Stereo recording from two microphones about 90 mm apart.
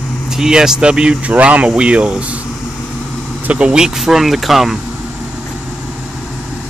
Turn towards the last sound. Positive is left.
turn(degrees=-5)  # may be behind; listen again after turning